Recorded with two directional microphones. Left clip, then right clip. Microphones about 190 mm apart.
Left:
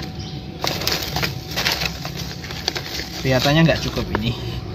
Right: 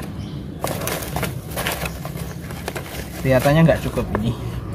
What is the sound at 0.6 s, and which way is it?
Bird, centre (ahead or behind).